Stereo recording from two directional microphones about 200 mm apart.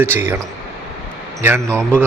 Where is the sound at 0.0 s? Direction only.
10° right (ahead or behind).